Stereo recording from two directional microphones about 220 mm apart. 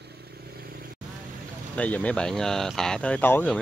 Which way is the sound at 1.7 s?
5° left (ahead or behind).